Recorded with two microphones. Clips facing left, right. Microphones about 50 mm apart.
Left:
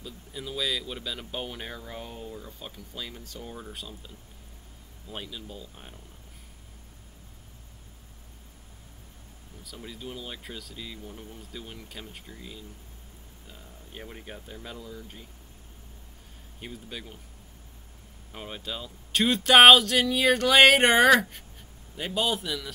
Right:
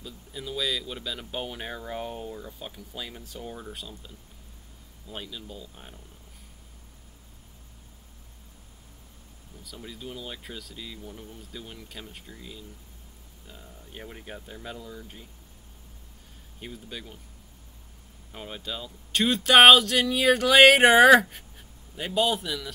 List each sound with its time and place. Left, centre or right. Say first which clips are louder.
0.0 s speech: even; centre
1.8 s speech: right 5 dB; right
2.3 s speech: right 2 dB; centre
9.6 s speech: even; centre
16.6 s speech: even; centre
18.3 s speech: even; centre